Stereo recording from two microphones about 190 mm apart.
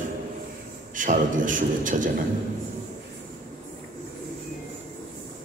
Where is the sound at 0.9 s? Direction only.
45° right (ahead or behind).